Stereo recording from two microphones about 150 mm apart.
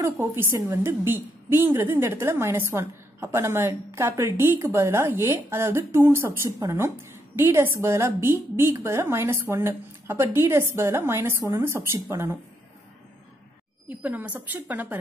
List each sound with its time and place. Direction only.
0.0 s a woman's voice: 20° right (ahead or behind)
13.8 s a woman's voice: 10° right (ahead or behind)